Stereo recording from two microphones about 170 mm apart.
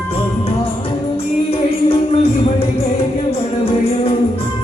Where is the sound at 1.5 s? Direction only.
35° left (ahead or behind).